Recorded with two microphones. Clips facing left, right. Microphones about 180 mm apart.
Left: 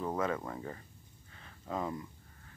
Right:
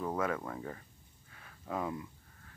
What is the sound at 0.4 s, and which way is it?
Speech, 5° left (ahead or behind).